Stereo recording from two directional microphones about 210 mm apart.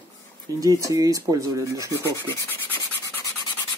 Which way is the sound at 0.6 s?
15° right (ahead or behind).